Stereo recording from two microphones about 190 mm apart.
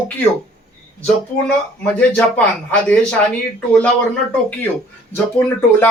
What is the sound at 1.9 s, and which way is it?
Speech, 5° left (ahead or behind).